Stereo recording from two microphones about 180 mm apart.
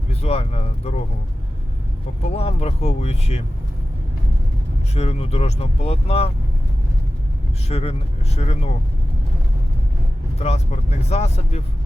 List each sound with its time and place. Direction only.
0.1 s speech: 35° left (ahead or behind)
2.3 s speech: 35° left (ahead or behind)
4.9 s speech: 35° left (ahead or behind)
7.7 s speech: 35° left (ahead or behind)
10.3 s speech: 35° left (ahead or behind)